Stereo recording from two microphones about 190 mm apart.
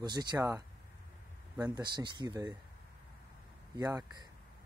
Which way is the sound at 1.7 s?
25° right (ahead or behind).